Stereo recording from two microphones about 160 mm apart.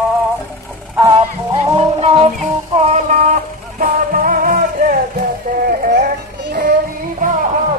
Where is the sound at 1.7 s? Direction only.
35° right (ahead or behind).